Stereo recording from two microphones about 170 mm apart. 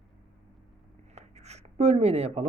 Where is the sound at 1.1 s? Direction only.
40° right (ahead or behind).